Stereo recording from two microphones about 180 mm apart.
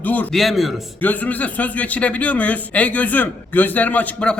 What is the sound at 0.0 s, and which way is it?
Speech, 10° left (ahead or behind).